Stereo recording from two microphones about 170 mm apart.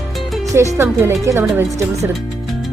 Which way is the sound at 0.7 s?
15° right (ahead or behind).